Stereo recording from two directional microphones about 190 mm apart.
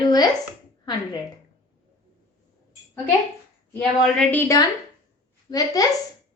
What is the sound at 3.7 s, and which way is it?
Speech, 5° left (ahead or behind).